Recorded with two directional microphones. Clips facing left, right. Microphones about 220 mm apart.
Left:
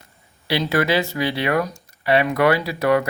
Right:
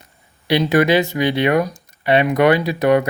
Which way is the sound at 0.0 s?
20° right (ahead or behind).